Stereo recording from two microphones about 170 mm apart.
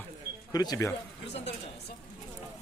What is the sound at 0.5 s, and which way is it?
Speech, 20° left (ahead or behind).